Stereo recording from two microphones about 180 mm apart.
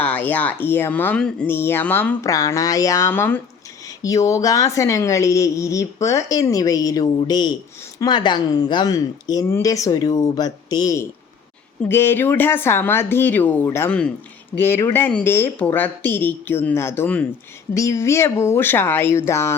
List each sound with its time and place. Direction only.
0.0 s a woman's voice: 10° left (ahead or behind)